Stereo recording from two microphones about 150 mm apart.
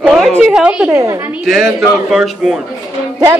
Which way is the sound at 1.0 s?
20° right (ahead or behind).